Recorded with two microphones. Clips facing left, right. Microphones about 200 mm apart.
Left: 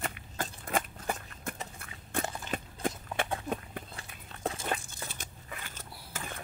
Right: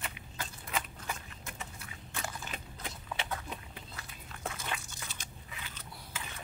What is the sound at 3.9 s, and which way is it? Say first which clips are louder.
Biting: left 1 dB; 30° left (ahead or behind).